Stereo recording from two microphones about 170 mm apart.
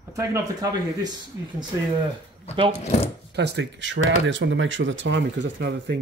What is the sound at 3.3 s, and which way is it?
Speech, 80° right.